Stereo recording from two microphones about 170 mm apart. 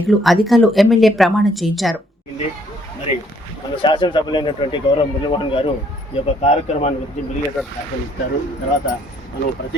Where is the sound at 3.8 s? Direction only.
30° left (ahead or behind).